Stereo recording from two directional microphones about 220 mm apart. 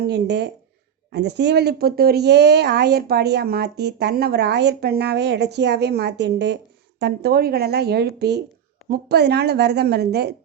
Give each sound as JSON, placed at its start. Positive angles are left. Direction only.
{"t": 0.0, "sound": "speech", "side_deg": -50}